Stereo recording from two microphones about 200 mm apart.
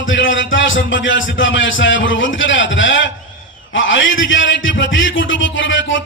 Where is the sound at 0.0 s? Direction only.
70° left (ahead or behind).